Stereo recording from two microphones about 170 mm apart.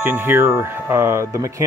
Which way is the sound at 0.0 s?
10° right (ahead or behind).